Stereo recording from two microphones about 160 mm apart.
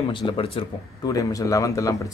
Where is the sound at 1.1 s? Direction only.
20° left (ahead or behind).